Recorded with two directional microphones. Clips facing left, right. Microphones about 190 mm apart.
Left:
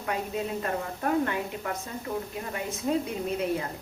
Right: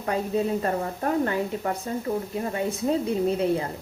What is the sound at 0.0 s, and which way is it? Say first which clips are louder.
A woman's voice: right 6 dB; 35° right (ahead or behind).